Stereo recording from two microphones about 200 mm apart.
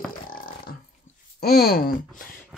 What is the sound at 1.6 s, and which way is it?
Speech, 45° left (ahead or behind).